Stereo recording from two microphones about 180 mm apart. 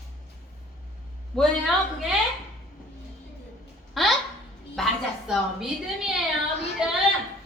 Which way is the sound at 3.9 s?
Centre (ahead or behind).